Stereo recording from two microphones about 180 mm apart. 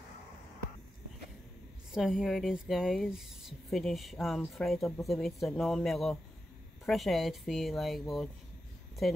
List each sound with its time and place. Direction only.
1.9 s speech: 5° right (ahead or behind)